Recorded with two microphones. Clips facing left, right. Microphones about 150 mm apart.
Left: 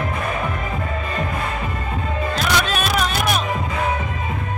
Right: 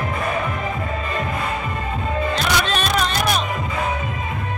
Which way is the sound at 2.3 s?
5° left (ahead or behind).